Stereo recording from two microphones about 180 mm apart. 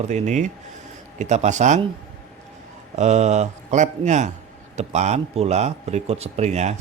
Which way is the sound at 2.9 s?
40° right (ahead or behind).